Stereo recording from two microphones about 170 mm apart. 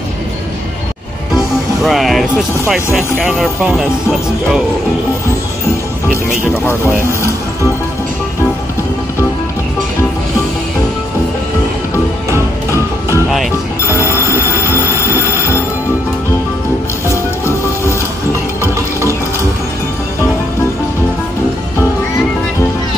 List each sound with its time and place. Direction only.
1.3 s music: centre (ahead or behind)
2.7 s speech: centre (ahead or behind)
13.7 s music: 15° left (ahead or behind)
14.4 s train: 15° left (ahead or behind)
17.1 s music: 15° left (ahead or behind)
18.6 s music: 15° right (ahead or behind)